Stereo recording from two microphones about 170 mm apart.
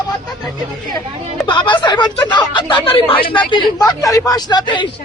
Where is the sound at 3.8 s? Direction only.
20° left (ahead or behind).